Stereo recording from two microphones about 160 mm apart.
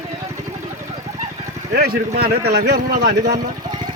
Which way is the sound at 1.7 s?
75° right (ahead or behind).